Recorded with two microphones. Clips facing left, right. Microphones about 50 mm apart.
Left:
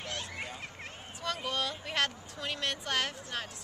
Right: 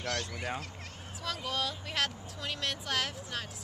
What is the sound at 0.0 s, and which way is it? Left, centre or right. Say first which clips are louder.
Speech: right 3 dB; left.